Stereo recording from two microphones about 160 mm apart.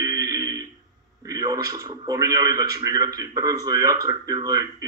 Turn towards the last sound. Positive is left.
turn(degrees=-20)  # may be behind; listen again after turning